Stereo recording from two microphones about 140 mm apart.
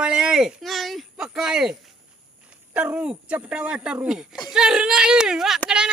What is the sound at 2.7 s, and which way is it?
A man's voice, 10° right (ahead or behind).